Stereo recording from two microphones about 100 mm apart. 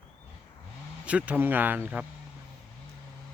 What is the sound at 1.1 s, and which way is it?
Speech, 15° right (ahead or behind).